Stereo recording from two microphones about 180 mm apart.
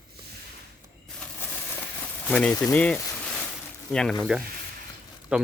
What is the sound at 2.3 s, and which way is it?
Speech, 5° left (ahead or behind).